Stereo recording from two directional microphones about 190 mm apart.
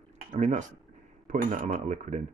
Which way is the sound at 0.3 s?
40° right (ahead or behind).